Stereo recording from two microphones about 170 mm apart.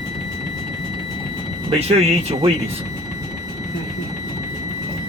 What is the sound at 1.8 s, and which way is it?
Speech, 35° right (ahead or behind).